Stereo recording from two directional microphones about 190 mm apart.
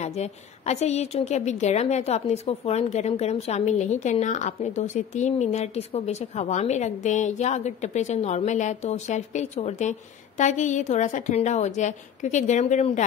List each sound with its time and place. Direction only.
0.0 s a woman's voice: 35° left (ahead or behind)